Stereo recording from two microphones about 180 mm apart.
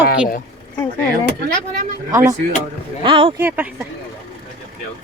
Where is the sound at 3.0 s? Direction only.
30° right (ahead or behind).